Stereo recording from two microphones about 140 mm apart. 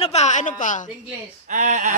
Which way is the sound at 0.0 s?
55° left (ahead or behind).